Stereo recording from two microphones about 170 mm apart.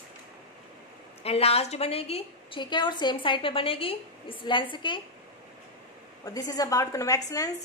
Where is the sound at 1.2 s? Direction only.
35° left (ahead or behind).